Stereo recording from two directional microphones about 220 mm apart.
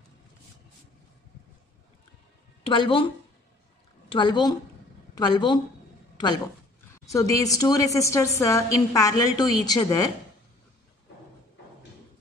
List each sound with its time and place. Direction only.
2.6 s a woman's voice: 25° left (ahead or behind)
4.1 s a woman's voice: 20° left (ahead or behind)